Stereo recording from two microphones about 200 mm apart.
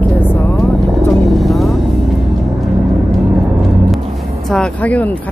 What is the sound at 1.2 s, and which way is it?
Vehicle, centre (ahead or behind).